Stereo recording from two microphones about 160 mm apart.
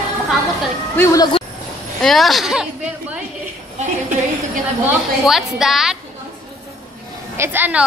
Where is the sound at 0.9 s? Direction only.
20° left (ahead or behind).